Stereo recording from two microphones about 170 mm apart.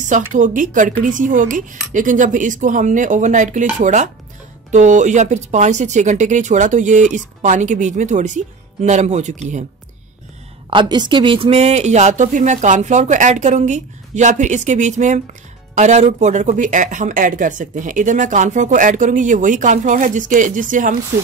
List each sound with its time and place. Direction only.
0.0 s speech: 50° right (ahead or behind)
10.7 s speech: 25° right (ahead or behind); by 20.9 s 50° right (ahead or behind)